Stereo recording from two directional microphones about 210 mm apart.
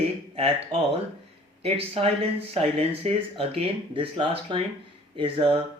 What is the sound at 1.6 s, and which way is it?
Speech, 25° right (ahead or behind).